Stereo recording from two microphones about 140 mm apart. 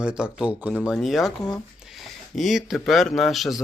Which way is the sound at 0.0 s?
5° right (ahead or behind).